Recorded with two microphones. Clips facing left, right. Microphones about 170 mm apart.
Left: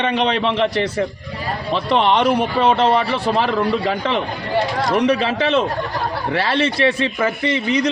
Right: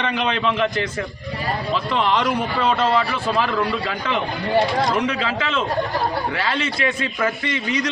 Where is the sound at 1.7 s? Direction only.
70° left (ahead or behind).